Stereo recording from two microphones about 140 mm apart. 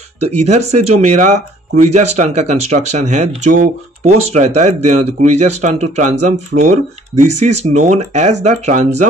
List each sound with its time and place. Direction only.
0.2 s speech: 55° right (ahead or behind)